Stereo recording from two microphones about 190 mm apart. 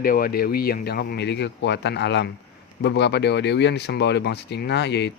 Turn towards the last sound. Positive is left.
turn(degrees=60)  # may be behind; listen again after turning